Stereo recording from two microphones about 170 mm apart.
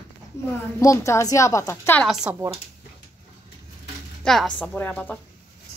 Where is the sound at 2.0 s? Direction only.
5° right (ahead or behind).